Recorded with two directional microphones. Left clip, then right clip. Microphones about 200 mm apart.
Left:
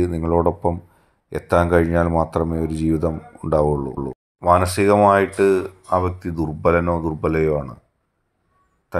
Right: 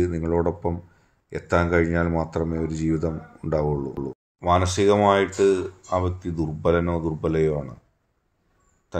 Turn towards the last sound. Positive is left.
turn(degrees=20)  # may be behind; listen again after turning